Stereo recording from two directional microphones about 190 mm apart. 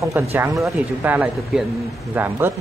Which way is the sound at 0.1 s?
10° right (ahead or behind).